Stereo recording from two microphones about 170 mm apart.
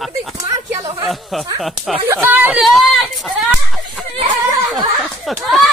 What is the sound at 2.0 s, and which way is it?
Speech, 10° right (ahead or behind).